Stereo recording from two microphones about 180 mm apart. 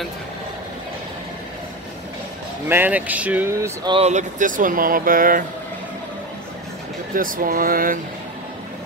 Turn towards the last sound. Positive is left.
turn(degrees=-50)  # may be behind; listen again after turning